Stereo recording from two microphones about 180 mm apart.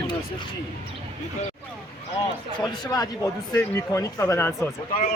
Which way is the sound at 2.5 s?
25° left (ahead or behind).